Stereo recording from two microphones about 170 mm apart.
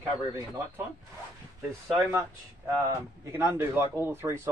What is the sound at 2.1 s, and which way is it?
Speech, 15° right (ahead or behind).